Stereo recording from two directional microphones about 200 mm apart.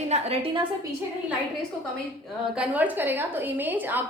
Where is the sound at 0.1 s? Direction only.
30° right (ahead or behind).